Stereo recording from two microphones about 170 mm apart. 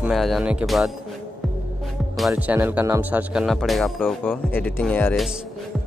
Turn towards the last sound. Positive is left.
turn(degrees=5)  # may be behind; listen again after turning